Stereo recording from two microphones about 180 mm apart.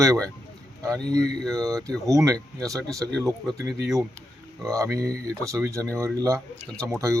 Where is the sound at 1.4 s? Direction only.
5° left (ahead or behind).